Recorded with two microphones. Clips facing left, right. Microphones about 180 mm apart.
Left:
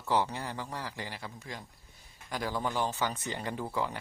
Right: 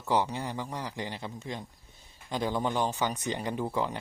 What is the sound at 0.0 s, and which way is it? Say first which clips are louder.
Speech: right 2 dB; 15° right (ahead or behind).